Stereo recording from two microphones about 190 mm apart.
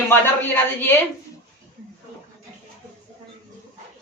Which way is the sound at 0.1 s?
10° left (ahead or behind).